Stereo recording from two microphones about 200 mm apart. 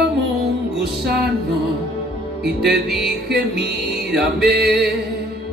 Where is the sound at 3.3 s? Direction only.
55° right (ahead or behind).